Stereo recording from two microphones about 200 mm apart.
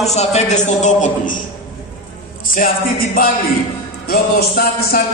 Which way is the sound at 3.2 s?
45° left (ahead or behind).